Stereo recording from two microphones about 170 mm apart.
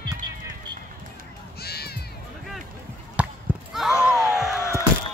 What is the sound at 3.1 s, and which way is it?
Basketball bounce, 5° right (ahead or behind).